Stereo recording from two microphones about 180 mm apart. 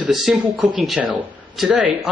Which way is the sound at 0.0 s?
5° right (ahead or behind).